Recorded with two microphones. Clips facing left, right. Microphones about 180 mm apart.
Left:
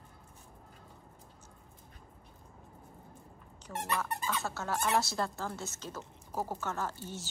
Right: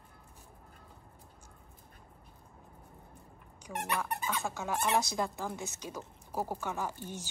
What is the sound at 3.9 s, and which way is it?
Speech, 15° right (ahead or behind).